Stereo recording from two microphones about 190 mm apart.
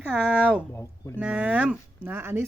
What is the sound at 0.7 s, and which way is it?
Speech, 15° left (ahead or behind).